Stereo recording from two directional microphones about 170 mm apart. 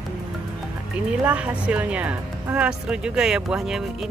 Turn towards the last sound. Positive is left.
turn(degrees=0)  # may be behind; listen again after turning